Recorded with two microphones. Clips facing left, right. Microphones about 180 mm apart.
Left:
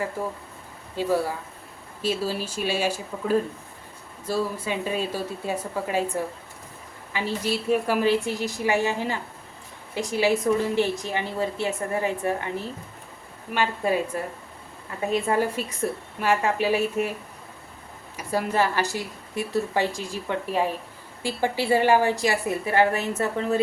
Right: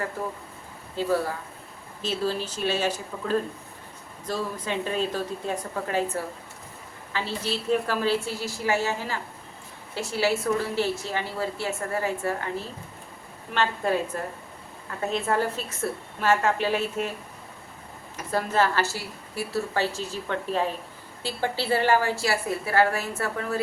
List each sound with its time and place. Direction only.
0.9 s a woman's voice: 10° left (ahead or behind)
18.2 s a woman's voice: 10° left (ahead or behind)